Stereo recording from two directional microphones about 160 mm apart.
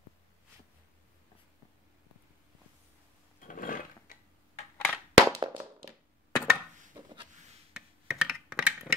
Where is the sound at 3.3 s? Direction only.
55° left (ahead or behind).